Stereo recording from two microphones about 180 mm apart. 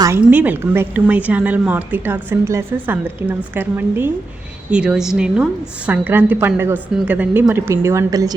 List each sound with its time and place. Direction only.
0.0 s a woman's voice: 10° right (ahead or behind)